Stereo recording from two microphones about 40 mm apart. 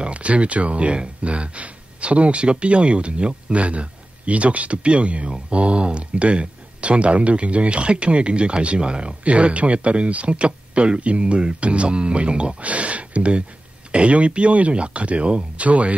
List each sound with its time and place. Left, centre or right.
0.0 s speech: right